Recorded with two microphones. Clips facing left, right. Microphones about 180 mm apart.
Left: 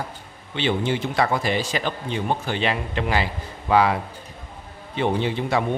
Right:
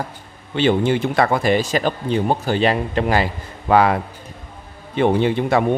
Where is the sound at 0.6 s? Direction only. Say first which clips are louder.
Right 6 dB; 50° right (ahead or behind).